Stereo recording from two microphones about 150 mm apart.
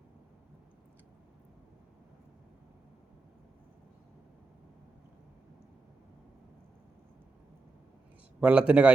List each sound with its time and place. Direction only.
8.4 s a man's voice: 10° right (ahead or behind)